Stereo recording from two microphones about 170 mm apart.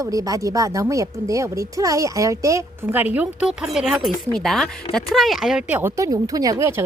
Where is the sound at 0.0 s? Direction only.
20° right (ahead or behind).